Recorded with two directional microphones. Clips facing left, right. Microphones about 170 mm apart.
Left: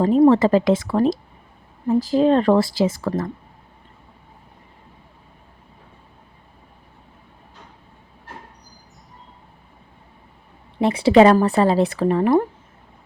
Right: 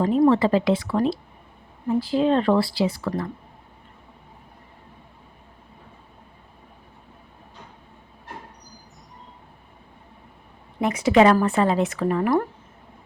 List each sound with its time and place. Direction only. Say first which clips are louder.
0.0 s speech: left 4 dB; 35° left (ahead or behind)
2.0 s speech: left 4 dB; 40° left (ahead or behind)
10.8 s speech: left 4 dB; 30° left (ahead or behind)